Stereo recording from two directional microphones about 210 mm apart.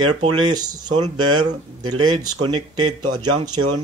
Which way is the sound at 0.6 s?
20° right (ahead or behind).